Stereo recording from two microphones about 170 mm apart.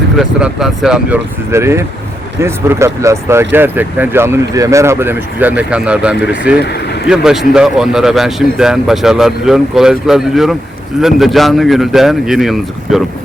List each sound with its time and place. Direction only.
0.2 s speech: 5° right (ahead or behind)
1.5 s speech: 15° right (ahead or behind)